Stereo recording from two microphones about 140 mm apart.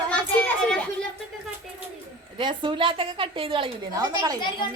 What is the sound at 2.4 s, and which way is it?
A woman's voice, 35° right (ahead or behind).